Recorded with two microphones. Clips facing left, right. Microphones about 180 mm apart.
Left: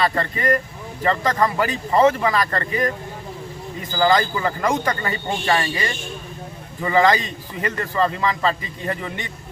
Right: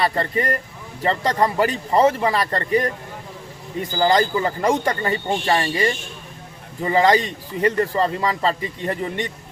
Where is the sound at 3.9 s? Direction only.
30° right (ahead or behind).